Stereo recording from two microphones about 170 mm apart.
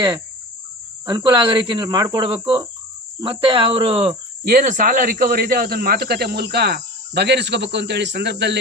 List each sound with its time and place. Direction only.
1.0 s speech: 25° right (ahead or behind)
4.4 s speech: 50° right (ahead or behind); by 8.5 s 85° right